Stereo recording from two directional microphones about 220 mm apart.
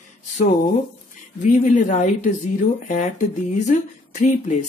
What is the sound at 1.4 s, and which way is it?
Speech, 35° left (ahead or behind).